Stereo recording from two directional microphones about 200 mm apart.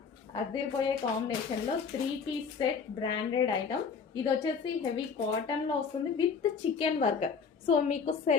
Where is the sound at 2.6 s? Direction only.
20° left (ahead or behind).